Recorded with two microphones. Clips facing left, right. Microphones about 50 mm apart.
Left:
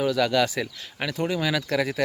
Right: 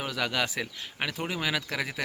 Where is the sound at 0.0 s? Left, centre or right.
Centre.